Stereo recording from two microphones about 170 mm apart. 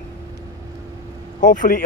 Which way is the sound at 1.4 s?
50° left (ahead or behind).